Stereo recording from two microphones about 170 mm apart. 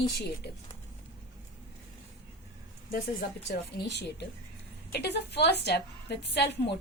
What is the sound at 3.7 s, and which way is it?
A woman's voice, 85° left.